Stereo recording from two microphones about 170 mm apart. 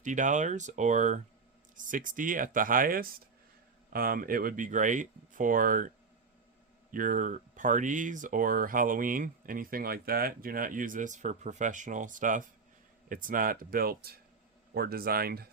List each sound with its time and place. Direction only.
0.0 s speech: 45° right (ahead or behind)
6.9 s speech: 50° right (ahead or behind)